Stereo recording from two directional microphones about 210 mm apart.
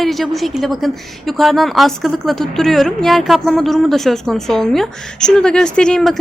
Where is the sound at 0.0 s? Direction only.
Centre (ahead or behind).